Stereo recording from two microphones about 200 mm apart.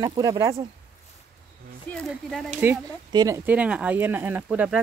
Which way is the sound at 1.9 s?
Centre (ahead or behind).